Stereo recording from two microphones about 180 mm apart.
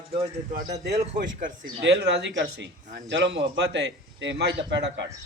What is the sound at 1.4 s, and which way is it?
Speech, 50° right (ahead or behind).